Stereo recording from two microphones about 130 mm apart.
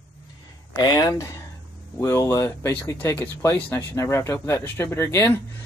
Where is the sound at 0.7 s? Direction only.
30° left (ahead or behind).